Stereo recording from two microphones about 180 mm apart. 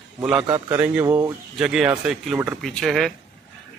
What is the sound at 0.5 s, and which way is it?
Speech, 10° right (ahead or behind).